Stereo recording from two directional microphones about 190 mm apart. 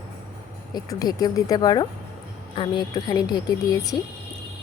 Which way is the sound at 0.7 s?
20° left (ahead or behind).